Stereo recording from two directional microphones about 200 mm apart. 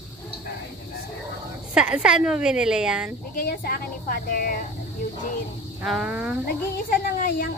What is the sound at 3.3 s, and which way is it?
A woman's voice, 50° left (ahead or behind).